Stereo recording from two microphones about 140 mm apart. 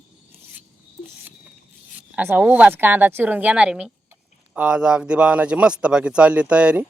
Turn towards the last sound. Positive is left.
turn(degrees=-10)  # may be behind; listen again after turning